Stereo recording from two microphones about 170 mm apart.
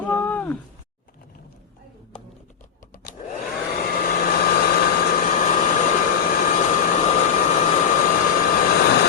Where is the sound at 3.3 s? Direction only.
60° left (ahead or behind).